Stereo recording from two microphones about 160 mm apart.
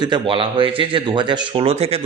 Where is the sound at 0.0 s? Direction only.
30° right (ahead or behind).